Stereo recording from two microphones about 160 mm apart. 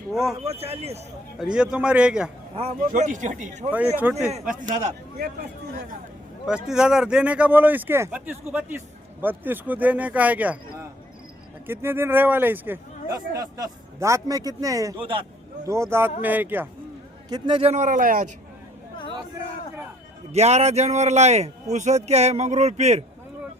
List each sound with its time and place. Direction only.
0.1 s a man's voice: centre (ahead or behind)
0.4 s speech: 40° right (ahead or behind)
1.5 s a man's voice: 5° right (ahead or behind)
2.8 s a man's voice: 55° right (ahead or behind)
3.7 s a man's voice: 10° right (ahead or behind)
4.3 s a man's voice: 50° right (ahead or behind)
5.1 s speech: 75° right (ahead or behind)
6.7 s speech: 5° right (ahead or behind)
13.1 s speech: 25° right (ahead or behind)
15.0 s speech: 30° right (ahead or behind)
15.6 s speech: 15° right (ahead or behind)
17.2 s a man's voice: 25° right (ahead or behind); by 18.3 s 60° right (ahead or behind)
20.3 s a man's voice: 40° right (ahead or behind)